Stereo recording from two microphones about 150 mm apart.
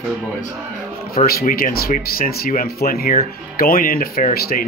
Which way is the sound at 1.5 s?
75° left (ahead or behind).